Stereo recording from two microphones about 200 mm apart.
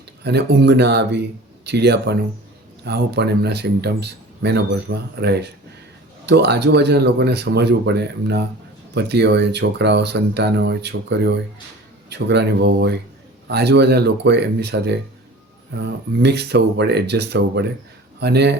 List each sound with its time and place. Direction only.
0.3 s speech: 55° right (ahead or behind)